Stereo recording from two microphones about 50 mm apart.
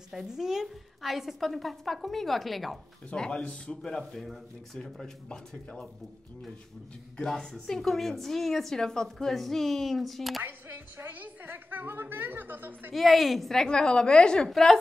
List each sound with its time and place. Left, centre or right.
0.1 s a woman's voice: centre
3.2 s a woman's voice: centre
4.1 s a woman's voice: centre
7.2 s a woman's voice: centre
10.4 s a woman's voice: right
12.9 s a woman's voice: centre
13.7 s a woman's voice: centre
14.5 s a woman's voice: centre